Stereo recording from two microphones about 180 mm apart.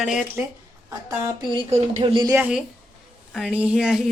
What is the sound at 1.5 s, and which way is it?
Speech, 35° right (ahead or behind).